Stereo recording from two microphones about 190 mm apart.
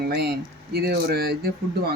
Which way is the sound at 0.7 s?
55° right (ahead or behind).